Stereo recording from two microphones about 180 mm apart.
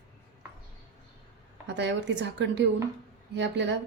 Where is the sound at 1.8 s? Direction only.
80° right.